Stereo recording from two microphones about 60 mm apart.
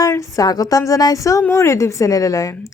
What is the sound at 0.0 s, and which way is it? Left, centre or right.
A woman's voice, left.